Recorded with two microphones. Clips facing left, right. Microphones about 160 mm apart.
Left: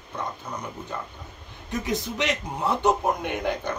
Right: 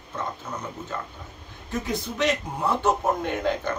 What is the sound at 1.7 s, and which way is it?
Speech, 20° left (ahead or behind).